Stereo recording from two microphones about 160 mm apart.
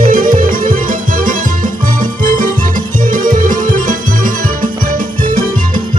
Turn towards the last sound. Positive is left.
turn(degrees=-55)  # may be behind; listen again after turning